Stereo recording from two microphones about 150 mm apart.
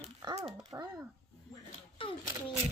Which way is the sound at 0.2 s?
25° right (ahead or behind).